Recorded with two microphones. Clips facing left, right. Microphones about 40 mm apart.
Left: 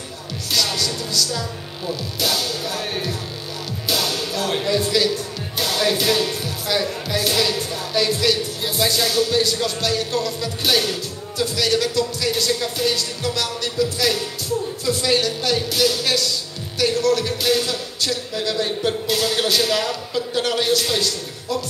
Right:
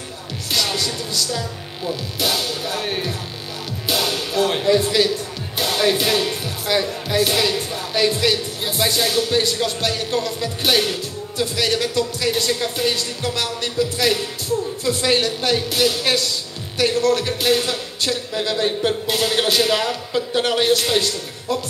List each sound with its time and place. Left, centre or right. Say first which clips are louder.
0.5 s music: even; centre
1.9 s speech: right 1 dB; centre
3.9 s music: right 2 dB; centre
4.6 s speech: right 1 dB; centre